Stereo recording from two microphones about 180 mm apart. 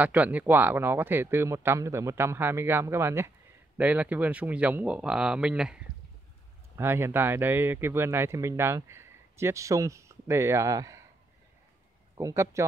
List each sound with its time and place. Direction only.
0.0 s speech: 10° right (ahead or behind)
12.2 s speech: 15° right (ahead or behind)